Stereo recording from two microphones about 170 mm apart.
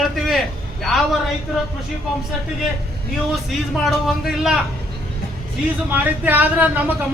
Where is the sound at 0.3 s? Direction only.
Centre (ahead or behind).